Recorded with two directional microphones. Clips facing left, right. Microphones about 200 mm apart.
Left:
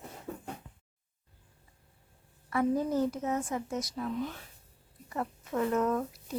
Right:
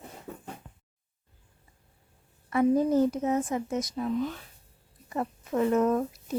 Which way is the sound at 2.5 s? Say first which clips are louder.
Right 6 dB; 20° right (ahead or behind).